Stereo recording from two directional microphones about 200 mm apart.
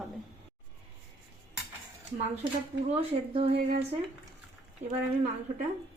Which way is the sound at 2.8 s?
30° right (ahead or behind).